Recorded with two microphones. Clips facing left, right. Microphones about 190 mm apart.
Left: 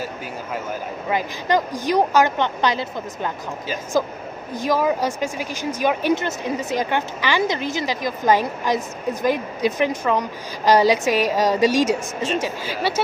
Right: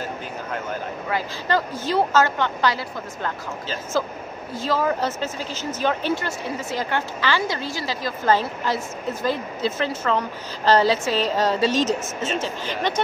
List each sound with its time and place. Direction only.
1.0 s speech: 15° left (ahead or behind)